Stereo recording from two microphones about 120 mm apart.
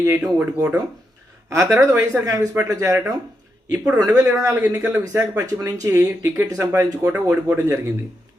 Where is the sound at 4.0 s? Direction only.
25° right (ahead or behind).